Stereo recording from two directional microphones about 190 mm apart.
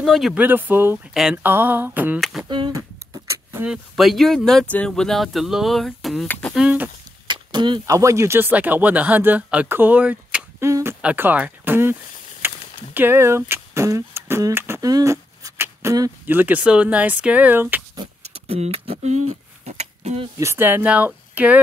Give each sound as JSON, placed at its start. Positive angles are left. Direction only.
{"t": 0.0, "sound": "speech", "side_deg": 0}
{"t": 2.1, "sound": "speech", "side_deg": 0}
{"t": 2.5, "sound": "speech", "side_deg": -20}
{"t": 6.5, "sound": "speech", "side_deg": -5}
{"t": 7.2, "sound": "speech", "side_deg": -25}
{"t": 12.4, "sound": "a sound", "side_deg": -10}
{"t": 12.9, "sound": "beatboxing", "side_deg": -10}
{"t": 17.9, "sound": "a sound", "side_deg": -25}
{"t": 20.3, "sound": "speech", "side_deg": -15}